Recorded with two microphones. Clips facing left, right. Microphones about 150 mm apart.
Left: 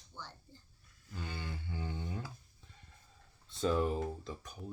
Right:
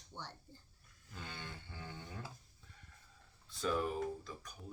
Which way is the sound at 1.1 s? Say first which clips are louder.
Left 5 dB; 5° left (ahead or behind).